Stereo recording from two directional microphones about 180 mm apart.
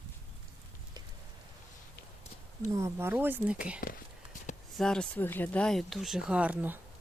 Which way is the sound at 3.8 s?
55° left (ahead or behind).